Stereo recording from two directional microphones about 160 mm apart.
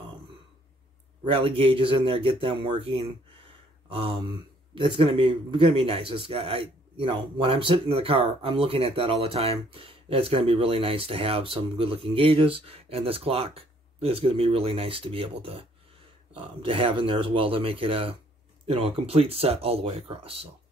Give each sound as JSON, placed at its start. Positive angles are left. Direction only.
{"t": 1.3, "sound": "a man's voice", "side_deg": -35}